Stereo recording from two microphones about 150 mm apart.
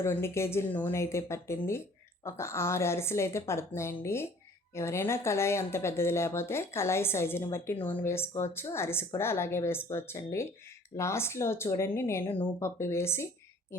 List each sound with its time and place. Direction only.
0.0 s speech: 15° left (ahead or behind)